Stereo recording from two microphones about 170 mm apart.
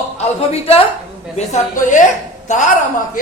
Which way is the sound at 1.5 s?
45° left (ahead or behind).